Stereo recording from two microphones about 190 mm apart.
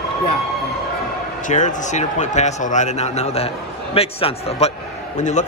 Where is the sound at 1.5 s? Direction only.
40° left (ahead or behind).